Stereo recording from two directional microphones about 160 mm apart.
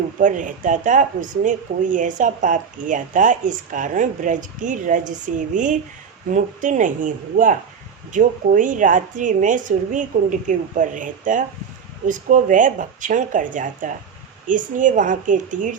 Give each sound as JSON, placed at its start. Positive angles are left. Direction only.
{"t": 0.2, "sound": "speech", "side_deg": -55}